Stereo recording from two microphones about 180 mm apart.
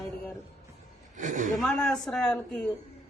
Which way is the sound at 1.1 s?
45° right (ahead or behind).